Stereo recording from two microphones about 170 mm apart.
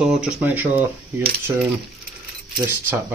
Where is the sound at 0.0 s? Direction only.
5° right (ahead or behind).